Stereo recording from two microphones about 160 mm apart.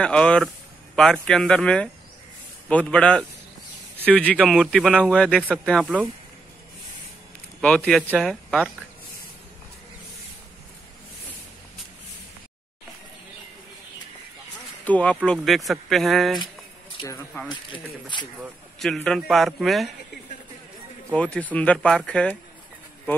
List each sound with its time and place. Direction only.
0.0 s a man's voice: 5° left (ahead or behind)
4.4 s a man's voice: 5° right (ahead or behind)
7.6 s a man's voice: 5° left (ahead or behind)
14.9 s a man's voice: 10° left (ahead or behind)
17.0 s speech: 15° left (ahead or behind)
17.5 s speech: 30° left (ahead or behind)
18.8 s a man's voice: centre (ahead or behind)
21.1 s speech: 10° left (ahead or behind)